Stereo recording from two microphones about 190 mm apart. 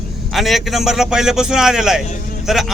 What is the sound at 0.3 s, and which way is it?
Speech, centre (ahead or behind).